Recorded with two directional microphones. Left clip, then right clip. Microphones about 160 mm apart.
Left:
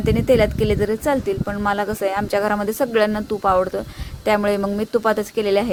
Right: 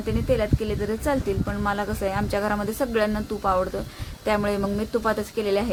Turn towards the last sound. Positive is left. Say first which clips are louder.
# left 5 dB
turn(degrees=45)  # may be behind; listen again after turning